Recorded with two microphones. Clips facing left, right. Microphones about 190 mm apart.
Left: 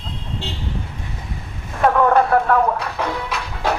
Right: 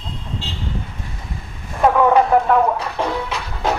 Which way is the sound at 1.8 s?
5° right (ahead or behind).